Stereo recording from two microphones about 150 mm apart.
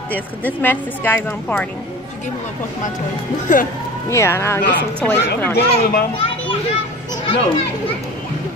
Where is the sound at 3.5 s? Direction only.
60° left (ahead or behind).